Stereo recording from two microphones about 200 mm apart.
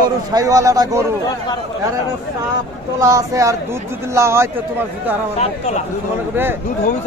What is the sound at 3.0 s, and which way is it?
Speech, 15° right (ahead or behind).